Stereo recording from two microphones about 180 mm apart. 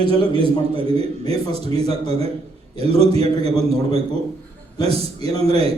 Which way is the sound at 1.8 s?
35° right (ahead or behind).